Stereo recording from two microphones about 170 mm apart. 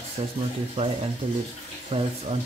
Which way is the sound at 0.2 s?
35° right (ahead or behind).